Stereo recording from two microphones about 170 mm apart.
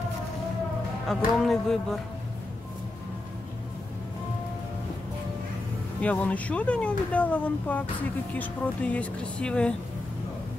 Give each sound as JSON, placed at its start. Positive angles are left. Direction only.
{"t": 1.0, "sound": "speech", "side_deg": 0}
{"t": 5.9, "sound": "speech", "side_deg": 10}